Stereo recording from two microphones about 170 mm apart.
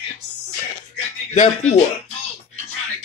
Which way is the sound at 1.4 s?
45° left (ahead or behind).